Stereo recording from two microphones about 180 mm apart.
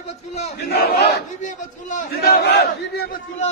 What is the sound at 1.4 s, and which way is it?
Speech, 45° left (ahead or behind).